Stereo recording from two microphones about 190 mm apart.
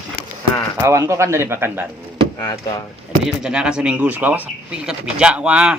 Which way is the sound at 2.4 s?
20° left (ahead or behind).